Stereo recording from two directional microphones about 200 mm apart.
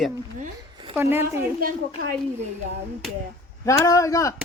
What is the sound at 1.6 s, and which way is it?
Speech, 45° right (ahead or behind).